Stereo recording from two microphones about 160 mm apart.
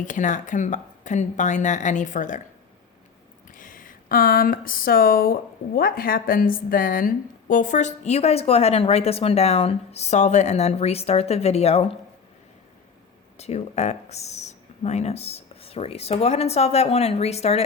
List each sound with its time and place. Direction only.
0.0 s speech: 50° left (ahead or behind)
3.5 s speech: 55° left (ahead or behind); by 11.9 s 40° left (ahead or behind)
13.3 s speech: 40° left (ahead or behind)